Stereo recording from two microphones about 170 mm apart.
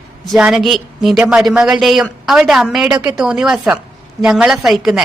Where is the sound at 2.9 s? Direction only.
20° right (ahead or behind).